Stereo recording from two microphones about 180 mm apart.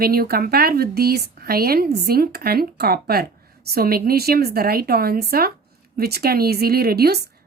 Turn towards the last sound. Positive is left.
turn(degrees=-60)  # may be behind; listen again after turning